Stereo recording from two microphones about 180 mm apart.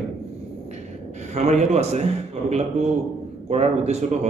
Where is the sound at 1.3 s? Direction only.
40° right (ahead or behind).